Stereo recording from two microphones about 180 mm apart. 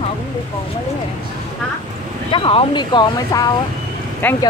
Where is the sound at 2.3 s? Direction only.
30° left (ahead or behind).